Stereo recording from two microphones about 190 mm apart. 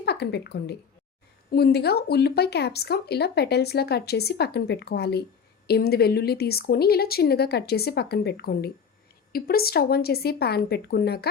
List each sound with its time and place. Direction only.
0.0 s a woman's voice: 60° left (ahead or behind)